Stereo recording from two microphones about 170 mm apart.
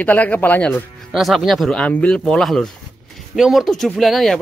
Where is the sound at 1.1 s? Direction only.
Centre (ahead or behind).